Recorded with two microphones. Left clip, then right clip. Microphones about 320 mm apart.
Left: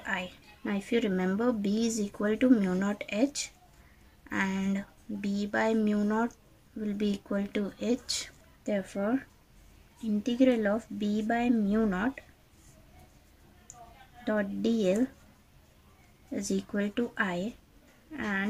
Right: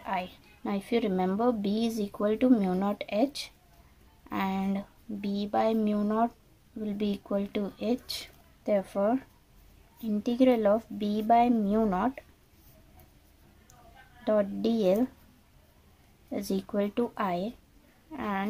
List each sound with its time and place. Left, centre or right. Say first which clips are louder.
0.0 s a woman's voice: right 1 dB; centre
10.2 s a woman's voice: right 3 dB; centre
14.2 s a woman's voice: right 4 dB; centre
16.3 s a woman's voice: right 2 dB; centre